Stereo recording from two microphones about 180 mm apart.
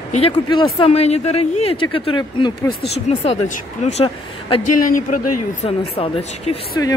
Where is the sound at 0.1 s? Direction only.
30° left (ahead or behind).